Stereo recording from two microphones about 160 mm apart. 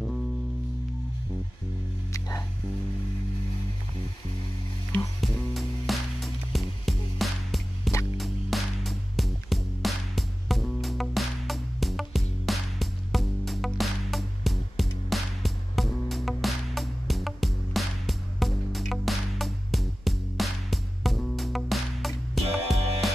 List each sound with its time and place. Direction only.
2.1 s music: 20° left (ahead or behind)
5.2 s music: centre (ahead or behind)